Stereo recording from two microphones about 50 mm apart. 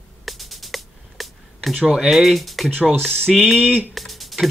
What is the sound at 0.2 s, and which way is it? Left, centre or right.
Music, centre.